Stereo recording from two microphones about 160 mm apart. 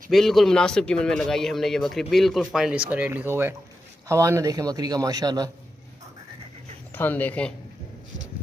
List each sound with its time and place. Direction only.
0.1 s a man's voice: centre (ahead or behind); by 5.5 s 25° right (ahead or behind)
7.0 s speech: 10° left (ahead or behind)